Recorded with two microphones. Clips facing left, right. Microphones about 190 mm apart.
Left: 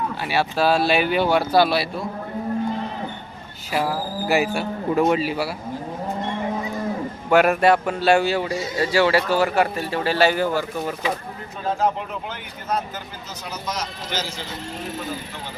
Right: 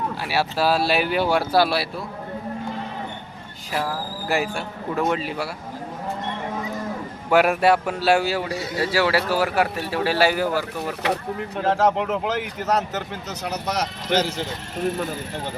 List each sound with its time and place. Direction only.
0.2 s speech: 5° right (ahead or behind)
3.7 s speech: 5° left (ahead or behind)
7.3 s speech: 5° right (ahead or behind)
11.0 s speech: 70° right (ahead or behind)
13.4 s speech: 65° right (ahead or behind)